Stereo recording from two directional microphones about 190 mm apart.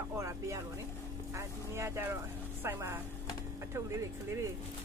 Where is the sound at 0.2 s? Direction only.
15° right (ahead or behind).